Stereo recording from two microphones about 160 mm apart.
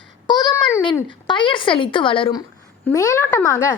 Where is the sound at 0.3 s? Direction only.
25° left (ahead or behind).